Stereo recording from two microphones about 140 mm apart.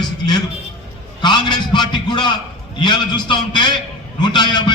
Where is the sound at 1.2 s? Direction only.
30° left (ahead or behind).